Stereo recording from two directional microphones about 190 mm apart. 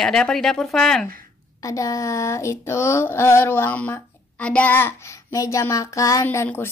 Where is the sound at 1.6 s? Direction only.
15° left (ahead or behind).